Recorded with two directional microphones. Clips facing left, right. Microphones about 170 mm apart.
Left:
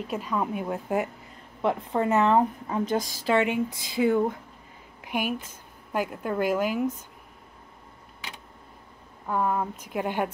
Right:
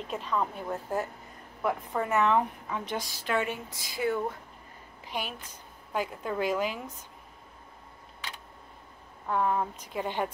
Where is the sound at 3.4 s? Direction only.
15° left (ahead or behind).